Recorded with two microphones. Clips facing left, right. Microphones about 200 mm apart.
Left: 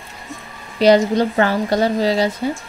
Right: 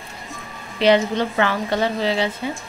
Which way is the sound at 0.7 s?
40° left (ahead or behind).